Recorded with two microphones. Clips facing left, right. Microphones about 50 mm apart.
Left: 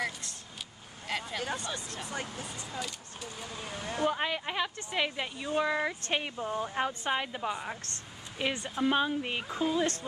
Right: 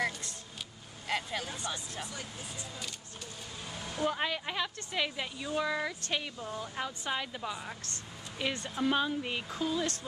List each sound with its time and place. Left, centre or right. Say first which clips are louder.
0.0 s vehicle: right 1 dB; centre
3.6 s a sound: left 3 dB; left
4.1 s speech: left 2 dB; centre; by 9.9 s left